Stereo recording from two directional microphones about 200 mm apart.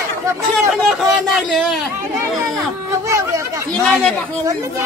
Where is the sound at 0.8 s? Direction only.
Centre (ahead or behind).